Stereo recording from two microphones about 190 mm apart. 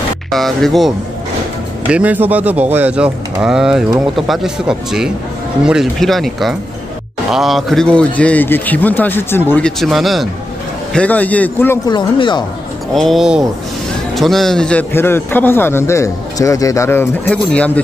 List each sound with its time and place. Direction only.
0.3 s a man's voice: centre (ahead or behind)
11.9 s speech: 25° left (ahead or behind)
12.9 s a man's voice: centre (ahead or behind)